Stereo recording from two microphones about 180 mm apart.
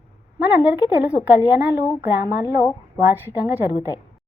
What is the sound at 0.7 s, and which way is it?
Speech, 5° right (ahead or behind).